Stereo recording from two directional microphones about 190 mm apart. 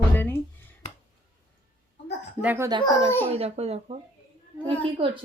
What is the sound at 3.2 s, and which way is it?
Speech, 30° right (ahead or behind).